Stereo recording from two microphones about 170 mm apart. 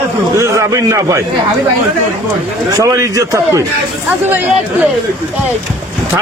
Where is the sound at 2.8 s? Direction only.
20° right (ahead or behind).